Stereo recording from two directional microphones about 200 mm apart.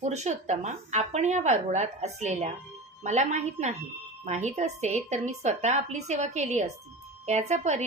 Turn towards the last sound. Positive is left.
turn(degrees=-35)  # may be behind; listen again after turning